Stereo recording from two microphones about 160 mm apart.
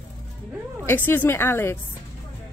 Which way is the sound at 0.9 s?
10° left (ahead or behind).